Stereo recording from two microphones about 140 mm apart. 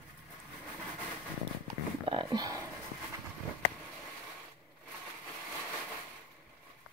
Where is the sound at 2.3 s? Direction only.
25° right (ahead or behind).